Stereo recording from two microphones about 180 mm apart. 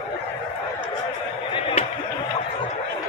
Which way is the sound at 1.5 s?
30° left (ahead or behind).